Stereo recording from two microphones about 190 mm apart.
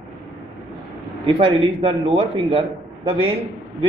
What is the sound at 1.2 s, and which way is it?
Speech, 25° right (ahead or behind).